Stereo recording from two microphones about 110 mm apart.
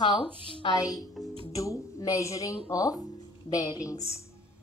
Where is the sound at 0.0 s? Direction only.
45° left (ahead or behind).